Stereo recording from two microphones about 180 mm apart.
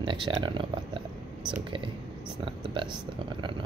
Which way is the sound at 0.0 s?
25° right (ahead or behind).